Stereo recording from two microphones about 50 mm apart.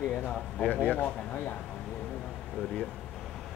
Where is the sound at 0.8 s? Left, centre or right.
Left.